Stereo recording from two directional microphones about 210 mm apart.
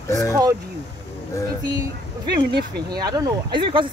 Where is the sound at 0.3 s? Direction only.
15° right (ahead or behind).